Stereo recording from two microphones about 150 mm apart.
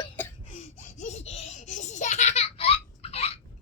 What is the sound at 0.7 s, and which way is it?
Baby laughter, 55° left (ahead or behind).